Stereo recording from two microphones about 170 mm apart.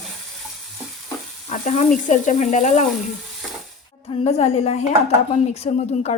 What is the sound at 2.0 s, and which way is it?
Speech, 45° left (ahead or behind).